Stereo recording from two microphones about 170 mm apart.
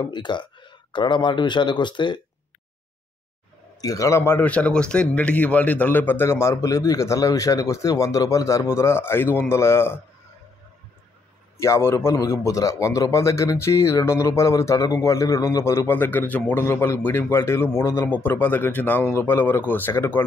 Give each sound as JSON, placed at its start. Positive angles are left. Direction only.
{"t": 0.0, "sound": "speech", "side_deg": 25}
{"t": 3.8, "sound": "a man's voice", "side_deg": 20}
{"t": 11.6, "sound": "a man's voice", "side_deg": 15}